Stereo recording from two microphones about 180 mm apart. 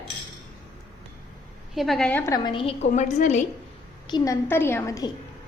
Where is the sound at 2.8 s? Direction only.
40° left (ahead or behind).